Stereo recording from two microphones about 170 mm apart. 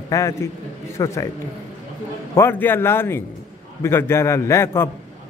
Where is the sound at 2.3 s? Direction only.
15° left (ahead or behind).